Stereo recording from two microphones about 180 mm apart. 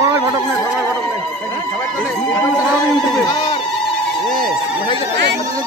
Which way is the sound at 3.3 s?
35° left (ahead or behind).